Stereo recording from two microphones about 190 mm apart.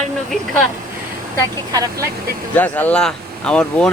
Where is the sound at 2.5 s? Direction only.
10° left (ahead or behind).